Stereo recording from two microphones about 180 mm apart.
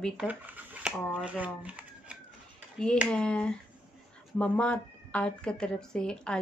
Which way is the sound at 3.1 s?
5° left (ahead or behind).